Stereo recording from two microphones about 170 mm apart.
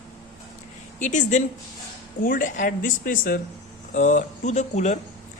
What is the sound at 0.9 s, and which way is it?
Speech, 50° left (ahead or behind).